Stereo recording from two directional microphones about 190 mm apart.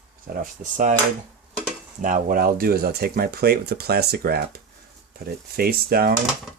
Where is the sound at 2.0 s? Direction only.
45° right (ahead or behind).